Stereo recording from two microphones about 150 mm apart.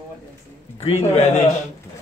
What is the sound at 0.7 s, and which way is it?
Speech, 40° left (ahead or behind).